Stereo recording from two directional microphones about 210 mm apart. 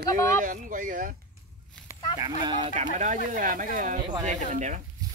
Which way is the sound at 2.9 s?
35° right (ahead or behind).